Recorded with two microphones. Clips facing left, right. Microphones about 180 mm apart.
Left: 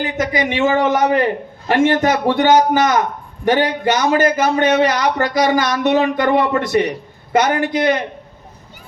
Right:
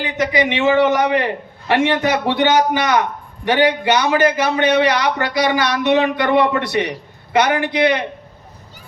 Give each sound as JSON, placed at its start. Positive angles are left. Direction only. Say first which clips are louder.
{"t": 0.0, "sound": "a man's voice", "louder": "right 1 dB", "side_deg": 45}